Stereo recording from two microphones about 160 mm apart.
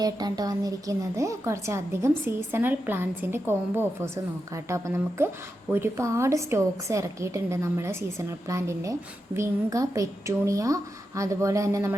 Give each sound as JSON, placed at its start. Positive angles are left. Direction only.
{"t": 0.0, "sound": "a woman's voice", "side_deg": -25}